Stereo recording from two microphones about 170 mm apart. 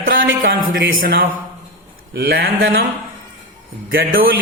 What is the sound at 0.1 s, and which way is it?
Speech, 90° right.